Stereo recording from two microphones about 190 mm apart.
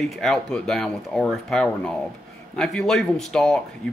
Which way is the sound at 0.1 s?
Centre (ahead or behind).